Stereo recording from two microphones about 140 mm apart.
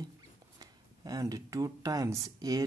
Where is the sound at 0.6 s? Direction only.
25° right (ahead or behind).